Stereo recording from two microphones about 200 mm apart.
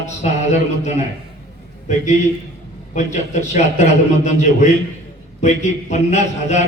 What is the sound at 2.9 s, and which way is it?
A man's voice, 35° left (ahead or behind).